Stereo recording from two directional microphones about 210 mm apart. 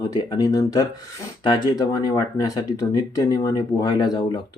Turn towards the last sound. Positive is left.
turn(degrees=20)  # may be behind; listen again after turning